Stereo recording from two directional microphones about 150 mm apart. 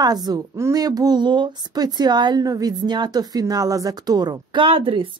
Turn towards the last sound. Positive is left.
turn(degrees=-35)  # may be behind; listen again after turning